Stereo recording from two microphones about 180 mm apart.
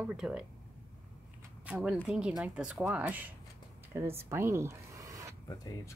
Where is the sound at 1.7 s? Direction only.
5° right (ahead or behind).